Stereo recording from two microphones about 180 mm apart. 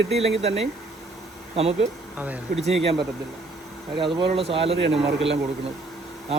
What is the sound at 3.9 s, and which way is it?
Speech, 30° right (ahead or behind).